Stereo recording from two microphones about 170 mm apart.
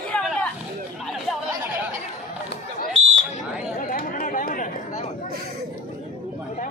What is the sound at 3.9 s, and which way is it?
Chatter, 55° left (ahead or behind).